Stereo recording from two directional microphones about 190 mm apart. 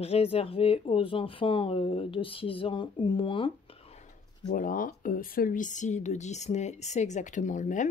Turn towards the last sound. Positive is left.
turn(degrees=40)  # may be behind; listen again after turning